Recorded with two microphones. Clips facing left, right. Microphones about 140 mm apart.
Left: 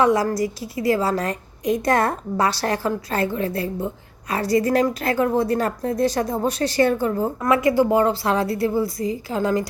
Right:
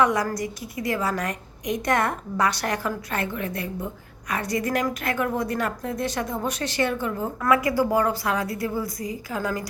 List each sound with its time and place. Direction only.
0.0 s a woman's voice: 30° left (ahead or behind)
7.4 s a woman's voice: 25° left (ahead or behind)